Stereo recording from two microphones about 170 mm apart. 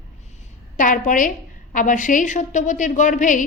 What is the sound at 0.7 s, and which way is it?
A woman's voice, 50° left (ahead or behind).